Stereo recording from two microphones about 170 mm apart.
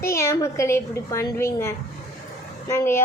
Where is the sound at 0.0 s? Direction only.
15° left (ahead or behind).